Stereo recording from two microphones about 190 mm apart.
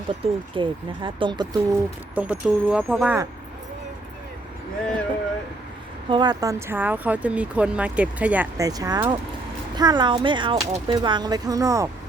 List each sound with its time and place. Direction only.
0.2 s speech: 25° right (ahead or behind)
2.1 s speech: 5° right (ahead or behind)
6.1 s speech: 25° right (ahead or behind)